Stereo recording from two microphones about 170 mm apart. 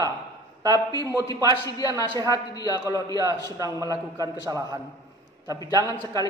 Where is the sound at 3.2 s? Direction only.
20° right (ahead or behind).